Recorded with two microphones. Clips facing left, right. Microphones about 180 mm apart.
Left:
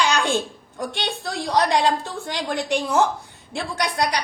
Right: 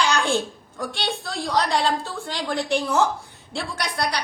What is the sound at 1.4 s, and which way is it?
A woman's voice, 15° left (ahead or behind).